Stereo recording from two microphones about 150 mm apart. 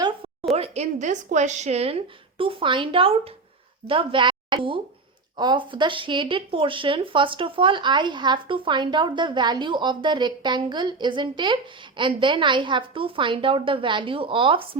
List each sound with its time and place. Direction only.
0.5 s speech: 45° right (ahead or behind)